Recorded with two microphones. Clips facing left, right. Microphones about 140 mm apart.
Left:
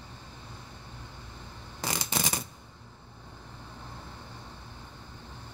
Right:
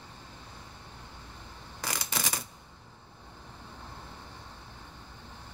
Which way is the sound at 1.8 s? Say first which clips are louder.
Left 3 dB; 25° left (ahead or behind).